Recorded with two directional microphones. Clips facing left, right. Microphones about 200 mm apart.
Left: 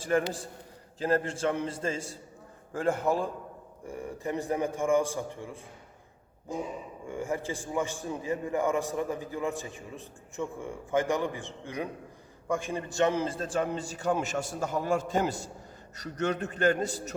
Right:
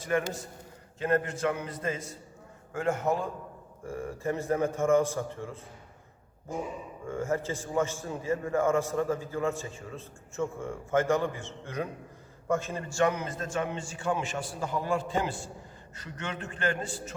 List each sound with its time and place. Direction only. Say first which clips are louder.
0.0 s a man's voice: left 2 dB; 30° left (ahead or behind)
3.8 s a man's voice: right 2 dB; 15° left (ahead or behind)
7.1 s a man's voice: right 2 dB; 15° left (ahead or behind); by 17.2 s 40° left (ahead or behind)